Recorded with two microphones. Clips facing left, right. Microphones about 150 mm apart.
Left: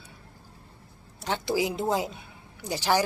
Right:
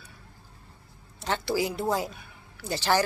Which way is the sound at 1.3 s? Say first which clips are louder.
Left 1 dB; 15° left (ahead or behind).